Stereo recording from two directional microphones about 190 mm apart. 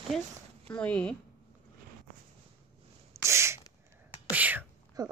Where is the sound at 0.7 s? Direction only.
5° left (ahead or behind).